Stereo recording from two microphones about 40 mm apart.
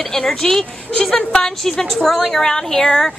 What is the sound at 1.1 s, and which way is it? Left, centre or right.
Speech, centre.